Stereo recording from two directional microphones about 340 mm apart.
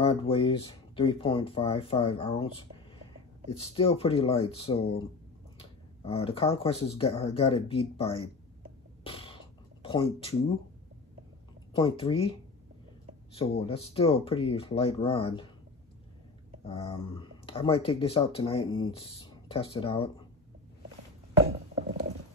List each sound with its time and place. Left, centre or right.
0.0 s speech: centre
3.5 s speech: centre
6.0 s speech: centre
9.0 s a sound: centre
9.8 s speech: centre
11.7 s speech: centre
16.6 s speech: centre